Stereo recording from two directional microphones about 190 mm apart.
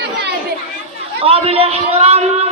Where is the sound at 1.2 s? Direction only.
30° right (ahead or behind).